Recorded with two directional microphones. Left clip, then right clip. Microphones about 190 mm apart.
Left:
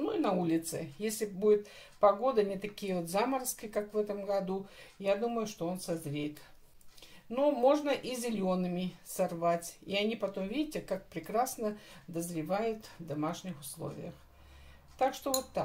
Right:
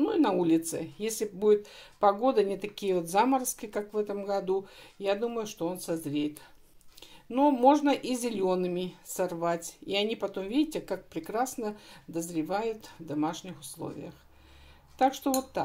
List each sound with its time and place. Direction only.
0.0 s speech: 50° right (ahead or behind)
15.0 s speech: 45° right (ahead or behind)